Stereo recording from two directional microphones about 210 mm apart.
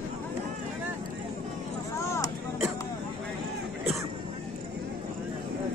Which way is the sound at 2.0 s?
15° left (ahead or behind).